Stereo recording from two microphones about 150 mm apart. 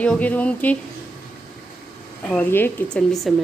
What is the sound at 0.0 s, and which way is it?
Speech, 10° left (ahead or behind).